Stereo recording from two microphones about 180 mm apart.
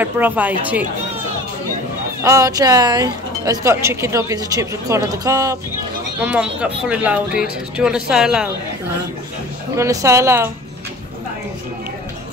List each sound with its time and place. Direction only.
0.0 s speech: 10° right (ahead or behind)
2.2 s speech: 15° right (ahead or behind)
6.1 s speech: 10° right (ahead or behind)
9.8 s speech: 15° right (ahead or behind)